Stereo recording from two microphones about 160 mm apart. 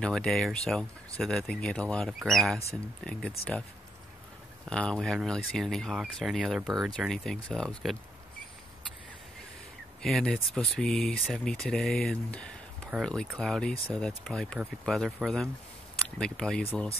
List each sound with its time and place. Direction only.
0.0 s speech: 5° left (ahead or behind)
4.6 s speech: 5° left (ahead or behind)
10.0 s speech: centre (ahead or behind)